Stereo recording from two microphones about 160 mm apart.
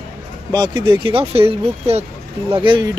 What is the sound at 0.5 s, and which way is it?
Speech, 25° right (ahead or behind).